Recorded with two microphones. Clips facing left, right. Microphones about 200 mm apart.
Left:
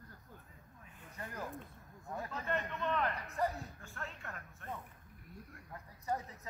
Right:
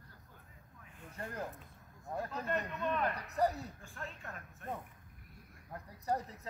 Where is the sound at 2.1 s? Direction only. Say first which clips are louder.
Right 2 dB; 35° right (ahead or behind).